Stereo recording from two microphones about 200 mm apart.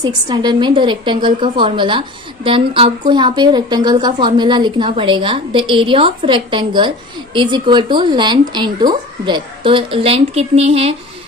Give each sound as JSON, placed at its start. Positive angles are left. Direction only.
{"t": 0.0, "sound": "a woman's voice", "side_deg": -20}